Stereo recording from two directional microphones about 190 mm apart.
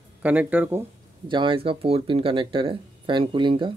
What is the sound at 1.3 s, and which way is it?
Speech, 25° right (ahead or behind).